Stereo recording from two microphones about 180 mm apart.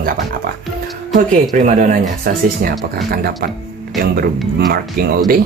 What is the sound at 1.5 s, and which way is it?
Speech, 45° right (ahead or behind).